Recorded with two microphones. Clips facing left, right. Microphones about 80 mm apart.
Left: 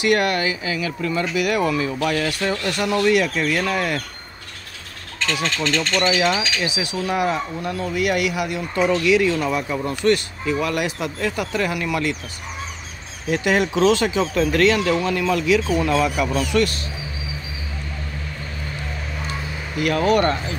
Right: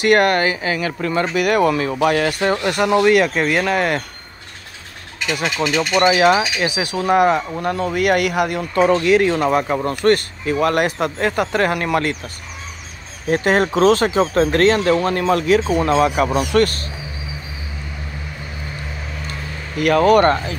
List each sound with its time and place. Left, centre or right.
0.0 s speech: right
5.2 s speech: centre
5.9 s speech: right
13.3 s speech: right
15.9 s speech: right
16.5 s speech: right
19.8 s speech: right